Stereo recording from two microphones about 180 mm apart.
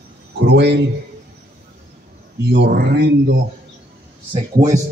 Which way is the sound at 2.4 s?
70° right (ahead or behind).